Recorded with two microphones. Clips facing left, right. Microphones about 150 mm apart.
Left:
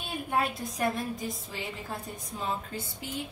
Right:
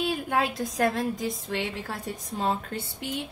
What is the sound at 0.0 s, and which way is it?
A woman's voice, 90° right.